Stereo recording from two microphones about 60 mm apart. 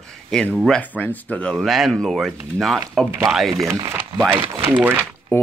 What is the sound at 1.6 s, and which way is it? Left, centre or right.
Speech, centre.